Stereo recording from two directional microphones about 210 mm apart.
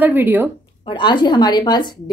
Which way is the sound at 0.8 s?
20° left (ahead or behind).